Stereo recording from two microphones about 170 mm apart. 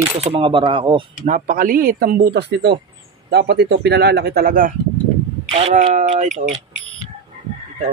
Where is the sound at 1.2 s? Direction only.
50° right (ahead or behind).